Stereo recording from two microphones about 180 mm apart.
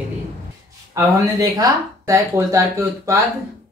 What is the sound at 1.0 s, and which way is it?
Speech, 20° right (ahead or behind).